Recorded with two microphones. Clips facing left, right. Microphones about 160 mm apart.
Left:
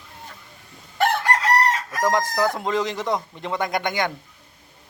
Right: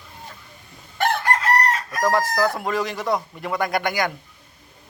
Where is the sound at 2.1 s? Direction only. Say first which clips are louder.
Right 1 dB; 20° left (ahead or behind).